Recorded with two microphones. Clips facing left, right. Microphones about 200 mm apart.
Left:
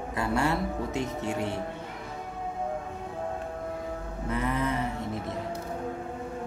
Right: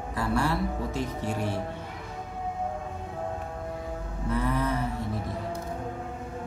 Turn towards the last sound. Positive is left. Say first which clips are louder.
# right 1 dB
turn(degrees=20)  # may be behind; listen again after turning